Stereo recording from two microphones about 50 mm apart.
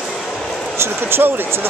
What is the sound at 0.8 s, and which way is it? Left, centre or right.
Speech, right.